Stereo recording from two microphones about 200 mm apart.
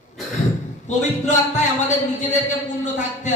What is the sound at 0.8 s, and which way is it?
A man's voice, 35° left (ahead or behind).